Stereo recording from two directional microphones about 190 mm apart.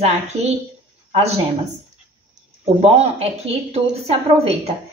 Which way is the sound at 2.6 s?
35° right (ahead or behind).